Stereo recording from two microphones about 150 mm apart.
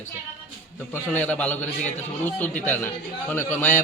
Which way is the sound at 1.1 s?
10° left (ahead or behind).